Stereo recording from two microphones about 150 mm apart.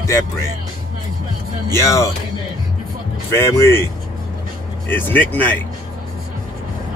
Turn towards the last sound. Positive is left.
turn(degrees=10)  # may be behind; listen again after turning